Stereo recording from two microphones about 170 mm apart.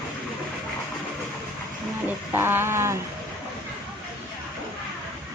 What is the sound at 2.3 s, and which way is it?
Speech, 15° right (ahead or behind).